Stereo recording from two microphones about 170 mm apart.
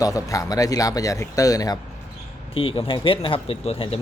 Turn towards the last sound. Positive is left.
turn(degrees=35)  # may be behind; listen again after turning